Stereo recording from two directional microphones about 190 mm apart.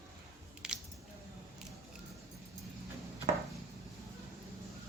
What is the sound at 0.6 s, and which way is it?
Squish, 5° right (ahead or behind).